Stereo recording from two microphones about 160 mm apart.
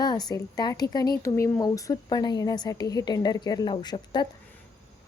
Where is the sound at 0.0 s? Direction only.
25° left (ahead or behind).